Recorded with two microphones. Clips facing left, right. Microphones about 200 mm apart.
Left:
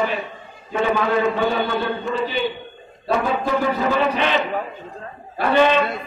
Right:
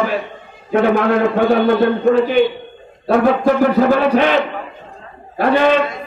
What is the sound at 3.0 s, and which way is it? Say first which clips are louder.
A man's voice: right 8 dB; 60° right (ahead or behind).